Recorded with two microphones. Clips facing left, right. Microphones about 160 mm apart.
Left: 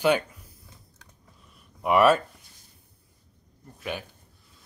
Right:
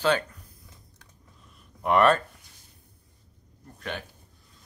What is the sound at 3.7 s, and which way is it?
Speech, 10° left (ahead or behind).